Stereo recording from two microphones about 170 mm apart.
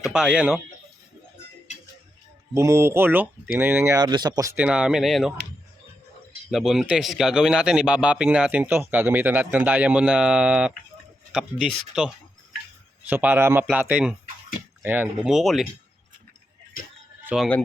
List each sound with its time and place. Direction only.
0.0 s speech: 5° right (ahead or behind)
2.6 s a man's voice: 15° right (ahead or behind)
4.5 s speech: 5° right (ahead or behind)
6.5 s a man's voice: centre (ahead or behind)
17.2 s speech: centre (ahead or behind)